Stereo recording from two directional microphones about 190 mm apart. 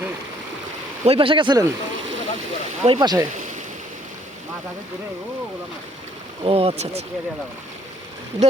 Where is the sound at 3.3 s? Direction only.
40° right (ahead or behind).